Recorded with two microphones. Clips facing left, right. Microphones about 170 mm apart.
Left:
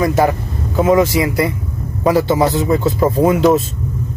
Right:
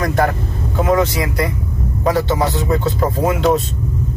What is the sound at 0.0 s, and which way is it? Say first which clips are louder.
Speech: left 3 dB; 5° left (ahead or behind).